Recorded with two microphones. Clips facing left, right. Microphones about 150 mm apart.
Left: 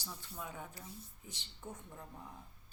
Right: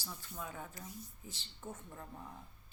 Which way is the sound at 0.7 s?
30° left (ahead or behind).